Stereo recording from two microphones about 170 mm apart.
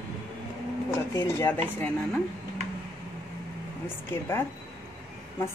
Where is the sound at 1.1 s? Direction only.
15° left (ahead or behind).